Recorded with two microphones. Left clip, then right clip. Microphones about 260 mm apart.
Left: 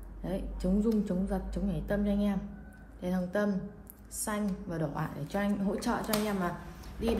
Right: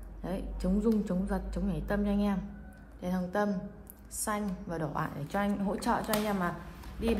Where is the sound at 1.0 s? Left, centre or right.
Right.